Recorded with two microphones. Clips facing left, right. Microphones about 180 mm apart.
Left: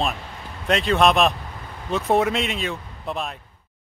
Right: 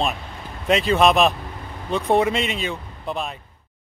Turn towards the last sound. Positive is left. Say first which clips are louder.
# right 1 dB
turn(degrees=0)  # may be behind; listen again after turning